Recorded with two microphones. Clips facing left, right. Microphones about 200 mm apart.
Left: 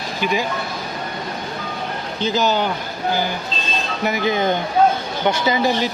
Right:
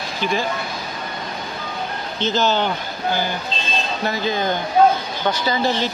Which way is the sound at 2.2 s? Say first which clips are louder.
Even; 15° left (ahead or behind).